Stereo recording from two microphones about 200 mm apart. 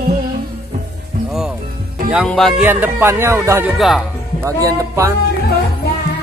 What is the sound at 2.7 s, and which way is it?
Speech, 10° right (ahead or behind).